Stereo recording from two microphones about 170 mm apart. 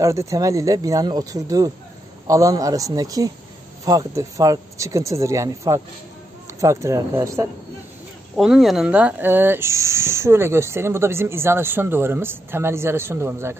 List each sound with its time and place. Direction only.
0.0 s speech: 20° right (ahead or behind)
8.4 s speech: centre (ahead or behind)